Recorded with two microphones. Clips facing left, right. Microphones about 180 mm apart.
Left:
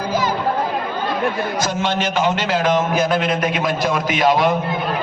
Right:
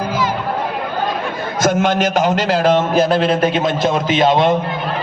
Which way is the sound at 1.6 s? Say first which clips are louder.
Right 10 dB; 50° right (ahead or behind).